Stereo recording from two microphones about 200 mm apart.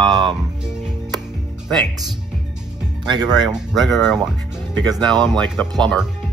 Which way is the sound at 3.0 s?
20° right (ahead or behind).